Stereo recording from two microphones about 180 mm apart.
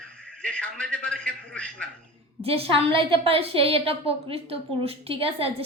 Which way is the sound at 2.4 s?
35° right (ahead or behind).